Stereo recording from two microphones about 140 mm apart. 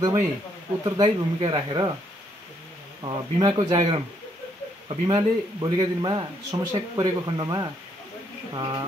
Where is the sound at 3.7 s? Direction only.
40° right (ahead or behind).